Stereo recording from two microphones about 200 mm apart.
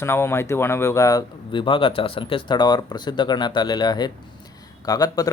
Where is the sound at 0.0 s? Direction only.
15° left (ahead or behind).